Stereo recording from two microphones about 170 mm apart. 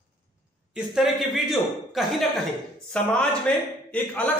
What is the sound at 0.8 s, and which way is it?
A man's voice, centre (ahead or behind).